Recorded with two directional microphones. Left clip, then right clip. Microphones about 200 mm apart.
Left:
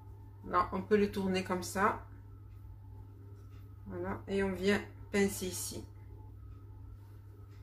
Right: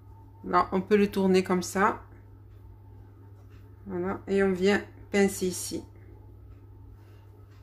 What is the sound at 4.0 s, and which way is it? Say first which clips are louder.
Speech: right 9 dB; 50° right (ahead or behind).